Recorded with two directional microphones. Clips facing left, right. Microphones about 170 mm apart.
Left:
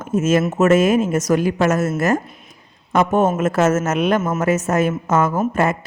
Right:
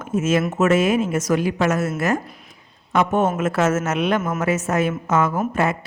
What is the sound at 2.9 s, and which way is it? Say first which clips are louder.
A woman's voice: left 3 dB; 40° left (ahead or behind).